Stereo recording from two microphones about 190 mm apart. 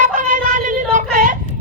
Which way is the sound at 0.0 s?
40° right (ahead or behind).